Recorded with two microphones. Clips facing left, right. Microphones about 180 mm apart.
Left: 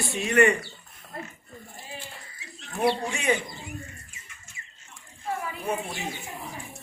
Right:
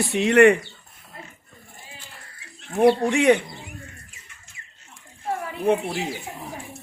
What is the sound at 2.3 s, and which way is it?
Speech, 55° right (ahead or behind).